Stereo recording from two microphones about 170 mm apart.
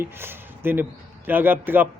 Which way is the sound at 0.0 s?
15° right (ahead or behind).